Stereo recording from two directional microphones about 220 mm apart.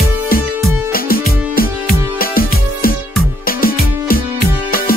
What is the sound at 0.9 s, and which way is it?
Music, 40° left (ahead or behind).